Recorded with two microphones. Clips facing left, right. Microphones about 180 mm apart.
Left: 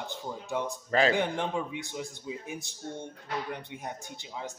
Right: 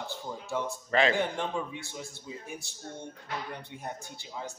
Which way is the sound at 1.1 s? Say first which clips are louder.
Left 1 dB; 15° left (ahead or behind).